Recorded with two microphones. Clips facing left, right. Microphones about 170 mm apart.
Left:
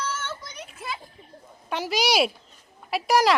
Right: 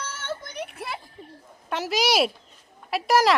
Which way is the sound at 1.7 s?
Centre (ahead or behind).